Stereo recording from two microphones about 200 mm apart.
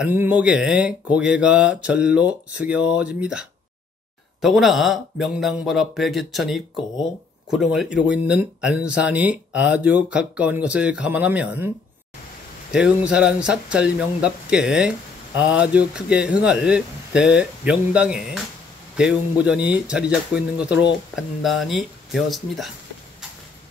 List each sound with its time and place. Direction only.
0.0 s speech: 10° right (ahead or behind)
12.7 s speech: 5° right (ahead or behind)